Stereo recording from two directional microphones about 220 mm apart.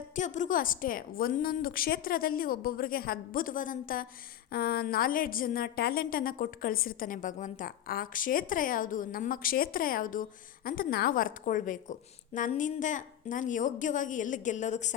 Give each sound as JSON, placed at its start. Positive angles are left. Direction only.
{"t": 0.2, "sound": "a woman's voice", "side_deg": 35}